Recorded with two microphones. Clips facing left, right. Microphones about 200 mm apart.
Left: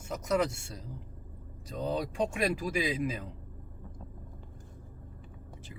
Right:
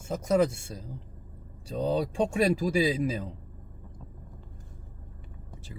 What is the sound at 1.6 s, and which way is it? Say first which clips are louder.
Speech: right 5 dB; 30° right (ahead or behind).